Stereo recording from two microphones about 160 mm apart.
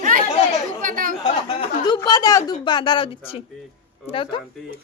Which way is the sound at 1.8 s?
25° left (ahead or behind).